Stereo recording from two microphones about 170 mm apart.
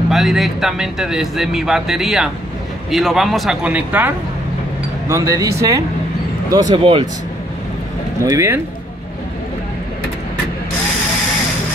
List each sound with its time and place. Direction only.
0.1 s speech: centre (ahead or behind); by 7.1 s 30° right (ahead or behind)
8.2 s speech: 15° right (ahead or behind)